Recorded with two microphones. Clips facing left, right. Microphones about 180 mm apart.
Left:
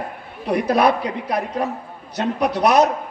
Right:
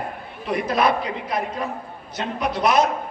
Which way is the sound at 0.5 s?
40° left (ahead or behind).